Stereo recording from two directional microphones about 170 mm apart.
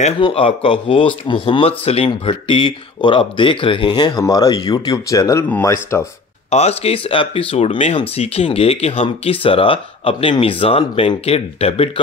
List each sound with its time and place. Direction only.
0.2 s speech: 30° left (ahead or behind); by 6.0 s 15° left (ahead or behind)
6.5 s speech: 40° left (ahead or behind)